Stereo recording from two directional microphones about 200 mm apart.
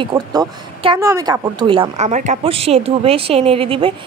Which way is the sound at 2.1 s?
35° right (ahead or behind).